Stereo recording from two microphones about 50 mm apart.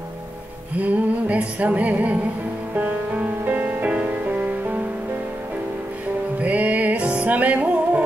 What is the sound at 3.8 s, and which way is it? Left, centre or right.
Music, right.